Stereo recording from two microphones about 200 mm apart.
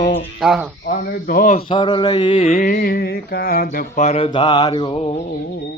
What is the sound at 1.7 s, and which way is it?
Music, 25° left (ahead or behind).